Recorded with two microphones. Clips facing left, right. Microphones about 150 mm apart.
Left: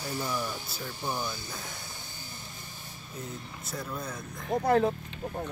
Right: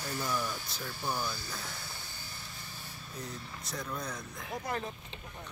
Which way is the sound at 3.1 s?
5° left (ahead or behind).